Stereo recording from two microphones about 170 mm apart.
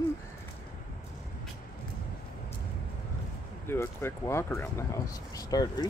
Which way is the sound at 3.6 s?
15° left (ahead or behind).